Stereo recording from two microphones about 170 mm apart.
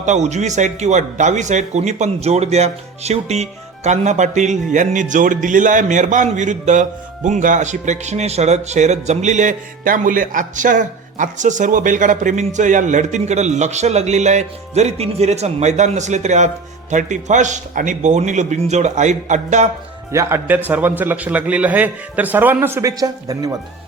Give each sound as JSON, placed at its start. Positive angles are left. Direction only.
{"t": 0.0, "sound": "speech", "side_deg": -45}
{"t": 20.1, "sound": "a man's voice", "side_deg": -15}